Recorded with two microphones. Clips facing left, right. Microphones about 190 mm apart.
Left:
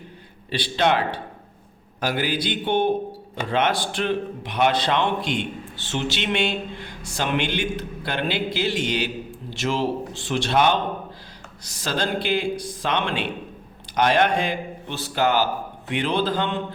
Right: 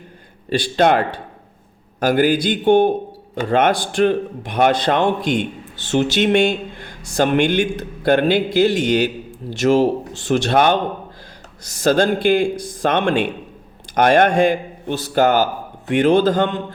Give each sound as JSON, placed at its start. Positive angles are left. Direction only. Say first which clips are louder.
{"t": 0.5, "sound": "a man's voice", "louder": "right 6 dB", "side_deg": -45}